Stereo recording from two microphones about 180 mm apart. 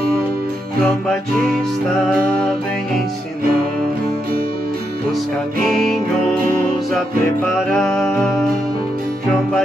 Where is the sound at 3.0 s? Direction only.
55° right (ahead or behind).